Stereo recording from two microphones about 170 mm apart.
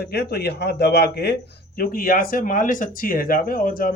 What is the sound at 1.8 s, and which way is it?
Speech, 60° left (ahead or behind).